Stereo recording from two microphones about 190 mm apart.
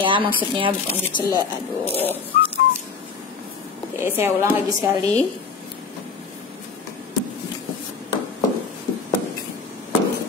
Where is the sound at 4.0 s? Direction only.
10° right (ahead or behind).